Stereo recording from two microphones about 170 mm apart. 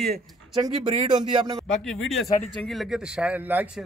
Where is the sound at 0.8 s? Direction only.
25° right (ahead or behind).